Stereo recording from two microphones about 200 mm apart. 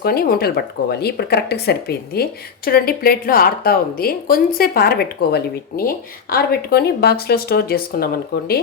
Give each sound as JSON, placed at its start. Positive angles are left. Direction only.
{"t": 0.0, "sound": "speech", "side_deg": 50}